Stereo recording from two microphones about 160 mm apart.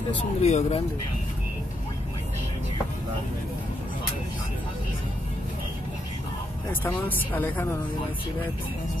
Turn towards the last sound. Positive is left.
turn(degrees=10)  # may be behind; listen again after turning